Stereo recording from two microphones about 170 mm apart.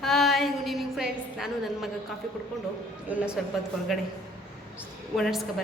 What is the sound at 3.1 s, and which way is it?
Speech, 10° right (ahead or behind).